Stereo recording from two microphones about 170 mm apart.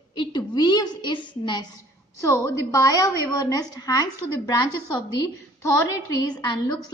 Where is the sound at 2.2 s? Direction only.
15° left (ahead or behind).